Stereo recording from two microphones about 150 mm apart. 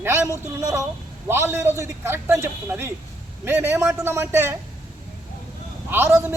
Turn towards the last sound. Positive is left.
turn(degrees=-10)  # may be behind; listen again after turning